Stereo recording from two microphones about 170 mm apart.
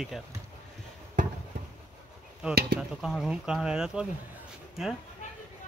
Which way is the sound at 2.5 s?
65° right (ahead or behind).